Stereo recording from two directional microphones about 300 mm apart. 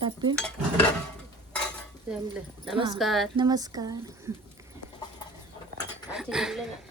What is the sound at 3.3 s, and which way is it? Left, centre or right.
Speech, centre.